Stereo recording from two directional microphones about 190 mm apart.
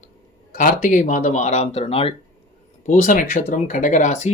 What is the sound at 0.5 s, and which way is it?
Speech, 45° left (ahead or behind).